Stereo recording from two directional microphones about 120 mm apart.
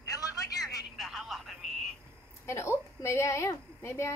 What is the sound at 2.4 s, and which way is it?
A woman's voice, 20° left (ahead or behind).